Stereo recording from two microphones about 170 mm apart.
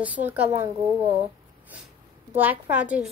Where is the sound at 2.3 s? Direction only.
10° right (ahead or behind).